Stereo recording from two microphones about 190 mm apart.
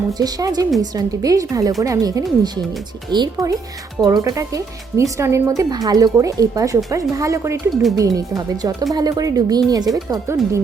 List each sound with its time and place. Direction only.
0.1 s speech: 20° right (ahead or behind)